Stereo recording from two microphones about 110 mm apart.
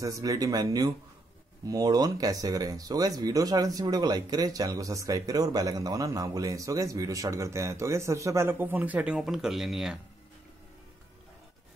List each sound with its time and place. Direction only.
0.0 s speech: 30° right (ahead or behind); by 9.9 s 5° right (ahead or behind)